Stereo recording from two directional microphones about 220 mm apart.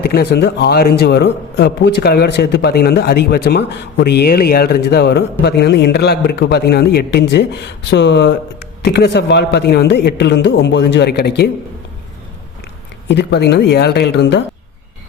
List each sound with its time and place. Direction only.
0.1 s a man's voice: 50° left (ahead or behind)
13.1 s a man's voice: 50° left (ahead or behind)